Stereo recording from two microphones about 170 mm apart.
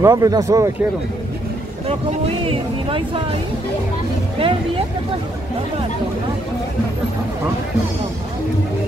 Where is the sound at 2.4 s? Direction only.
30° right (ahead or behind).